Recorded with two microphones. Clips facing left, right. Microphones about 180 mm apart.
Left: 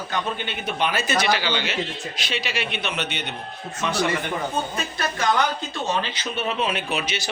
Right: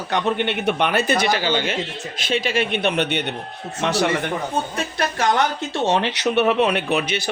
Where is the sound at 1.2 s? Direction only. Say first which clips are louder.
Right 3 dB; 45° right (ahead or behind).